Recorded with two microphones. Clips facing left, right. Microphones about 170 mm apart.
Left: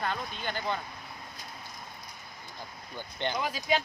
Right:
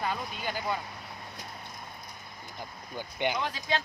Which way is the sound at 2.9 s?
10° right (ahead or behind).